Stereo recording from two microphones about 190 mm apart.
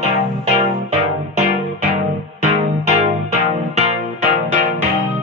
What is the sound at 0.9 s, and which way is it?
Music, 40° right (ahead or behind).